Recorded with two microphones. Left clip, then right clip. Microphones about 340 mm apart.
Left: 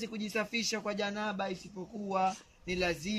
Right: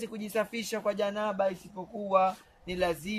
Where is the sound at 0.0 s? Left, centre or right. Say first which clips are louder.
Right 4 dB; centre.